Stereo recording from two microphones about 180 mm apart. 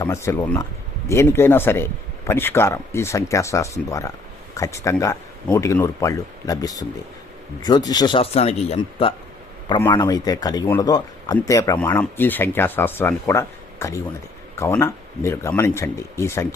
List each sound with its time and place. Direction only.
0.0 s a man's voice: 15° left (ahead or behind)